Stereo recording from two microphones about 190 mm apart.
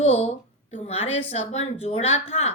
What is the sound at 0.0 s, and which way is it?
A woman's voice, 35° left (ahead or behind).